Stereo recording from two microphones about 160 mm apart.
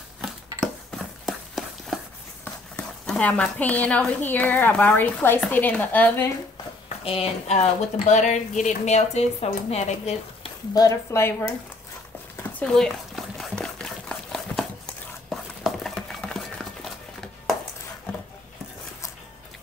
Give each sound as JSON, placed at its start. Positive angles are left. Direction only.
{"t": 0.9, "sound": "horse", "side_deg": 0}
{"t": 2.4, "sound": "speech", "side_deg": 5}
{"t": 7.1, "sound": "speech", "side_deg": 40}
{"t": 10.7, "sound": "speech", "side_deg": 20}
{"t": 12.4, "sound": "a sound", "side_deg": 10}